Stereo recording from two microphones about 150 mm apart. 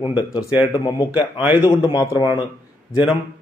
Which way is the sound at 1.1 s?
10° right (ahead or behind).